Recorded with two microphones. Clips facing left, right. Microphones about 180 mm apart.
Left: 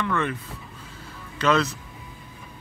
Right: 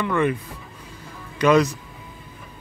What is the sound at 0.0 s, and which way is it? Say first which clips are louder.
Speech: right 5 dB; 15° right (ahead or behind).